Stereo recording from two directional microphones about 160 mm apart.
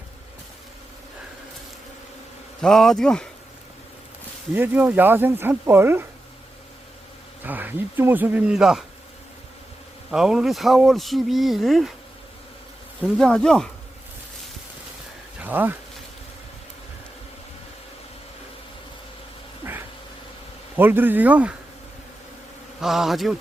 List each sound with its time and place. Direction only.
2.6 s speech: 5° left (ahead or behind)
4.5 s speech: 10° right (ahead or behind)
7.4 s speech: 10° right (ahead or behind)
10.1 s speech: 5° right (ahead or behind)
13.0 s speech: 5° left (ahead or behind)
15.4 s bee: 10° right (ahead or behind)
19.6 s a sound: 15° right (ahead or behind)
20.7 s speech: 15° right (ahead or behind)
22.8 s speech: centre (ahead or behind)